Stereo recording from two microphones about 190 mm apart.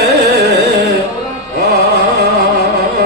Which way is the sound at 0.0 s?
60° right (ahead or behind).